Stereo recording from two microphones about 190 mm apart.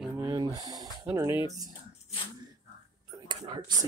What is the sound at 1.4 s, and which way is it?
Speech, 20° right (ahead or behind).